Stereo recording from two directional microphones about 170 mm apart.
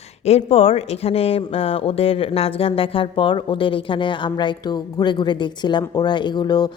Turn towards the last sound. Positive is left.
turn(degrees=25)  # may be behind; listen again after turning